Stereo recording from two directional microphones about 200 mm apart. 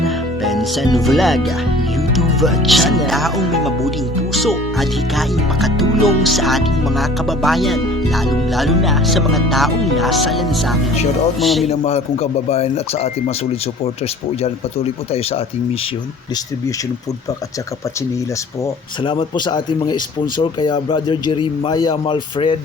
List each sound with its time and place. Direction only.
0.0 s music: centre (ahead or behind)
0.9 s speech: centre (ahead or behind)
11.7 s speech: 30° left (ahead or behind)
18.6 s a man's voice: 25° left (ahead or behind)